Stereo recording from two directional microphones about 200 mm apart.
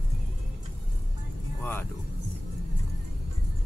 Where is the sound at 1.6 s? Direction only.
10° left (ahead or behind).